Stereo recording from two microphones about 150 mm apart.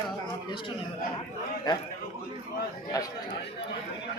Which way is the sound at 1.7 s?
30° left (ahead or behind).